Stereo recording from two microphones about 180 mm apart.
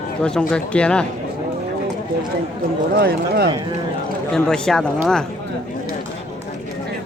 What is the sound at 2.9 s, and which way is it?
Speech, 60° right (ahead or behind).